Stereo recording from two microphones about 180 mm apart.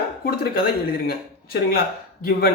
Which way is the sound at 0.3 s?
55° left (ahead or behind).